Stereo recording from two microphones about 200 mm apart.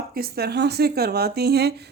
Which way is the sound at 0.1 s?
50° right (ahead or behind).